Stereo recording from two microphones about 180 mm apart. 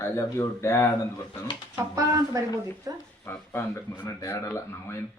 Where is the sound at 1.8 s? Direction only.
20° right (ahead or behind).